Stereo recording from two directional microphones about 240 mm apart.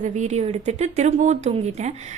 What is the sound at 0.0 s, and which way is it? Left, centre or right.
A woman's voice, right.